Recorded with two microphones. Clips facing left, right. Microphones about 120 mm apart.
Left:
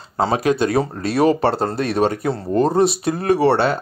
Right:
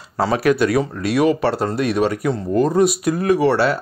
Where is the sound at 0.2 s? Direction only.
25° left (ahead or behind).